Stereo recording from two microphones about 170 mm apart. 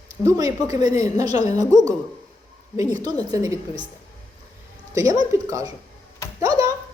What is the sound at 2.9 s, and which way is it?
Speech, 25° right (ahead or behind).